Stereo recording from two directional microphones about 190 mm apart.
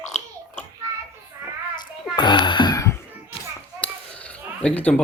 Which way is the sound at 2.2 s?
25° left (ahead or behind).